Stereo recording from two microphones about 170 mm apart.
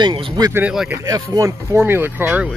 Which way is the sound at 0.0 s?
30° right (ahead or behind).